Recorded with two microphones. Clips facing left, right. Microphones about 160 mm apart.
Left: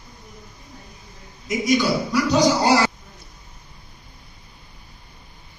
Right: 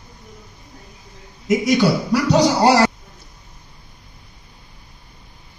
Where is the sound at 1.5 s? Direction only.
60° right (ahead or behind).